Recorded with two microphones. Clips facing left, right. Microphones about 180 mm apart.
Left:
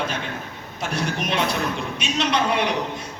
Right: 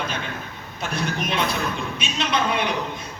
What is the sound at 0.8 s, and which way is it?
A man's voice, 75° left (ahead or behind).